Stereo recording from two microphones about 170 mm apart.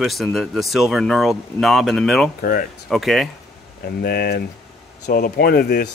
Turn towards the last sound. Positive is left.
turn(degrees=70)  # may be behind; listen again after turning